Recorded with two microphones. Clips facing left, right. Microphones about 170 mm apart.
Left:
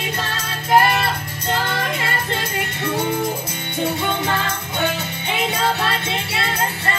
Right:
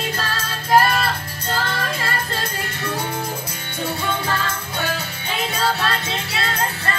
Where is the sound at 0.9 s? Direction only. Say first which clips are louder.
Left 1 dB; 20° left (ahead or behind).